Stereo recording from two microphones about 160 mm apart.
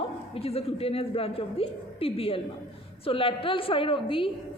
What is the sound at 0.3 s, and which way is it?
A woman's voice, 40° left (ahead or behind).